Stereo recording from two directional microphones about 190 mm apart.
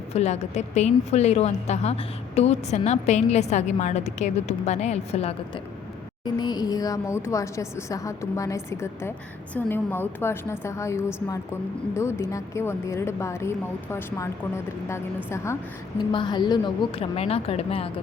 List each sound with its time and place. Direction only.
0.1 s a woman's voice: 35° left (ahead or behind)
6.2 s a woman's voice: 20° left (ahead or behind)